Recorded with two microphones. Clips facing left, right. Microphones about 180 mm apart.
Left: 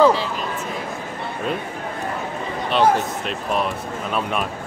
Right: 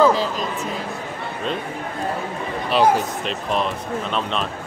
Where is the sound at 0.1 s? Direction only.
40° right (ahead or behind).